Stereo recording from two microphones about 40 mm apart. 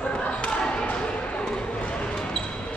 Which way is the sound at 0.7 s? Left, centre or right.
Left.